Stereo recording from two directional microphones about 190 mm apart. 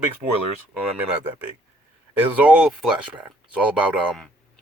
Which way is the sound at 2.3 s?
5° right (ahead or behind).